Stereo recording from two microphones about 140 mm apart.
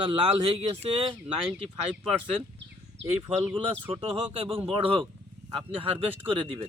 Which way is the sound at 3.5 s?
40° right (ahead or behind).